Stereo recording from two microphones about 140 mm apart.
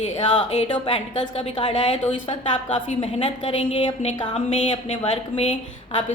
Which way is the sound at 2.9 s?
40° left (ahead or behind).